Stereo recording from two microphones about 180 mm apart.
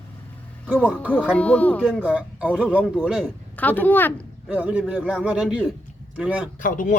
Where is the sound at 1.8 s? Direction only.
5° right (ahead or behind).